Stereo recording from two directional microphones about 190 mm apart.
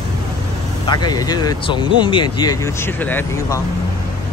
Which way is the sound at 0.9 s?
20° left (ahead or behind).